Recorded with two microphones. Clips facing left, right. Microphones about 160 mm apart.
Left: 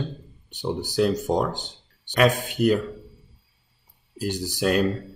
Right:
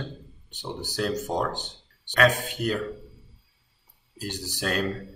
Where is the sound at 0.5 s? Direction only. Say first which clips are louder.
Left 7 dB; 15° left (ahead or behind).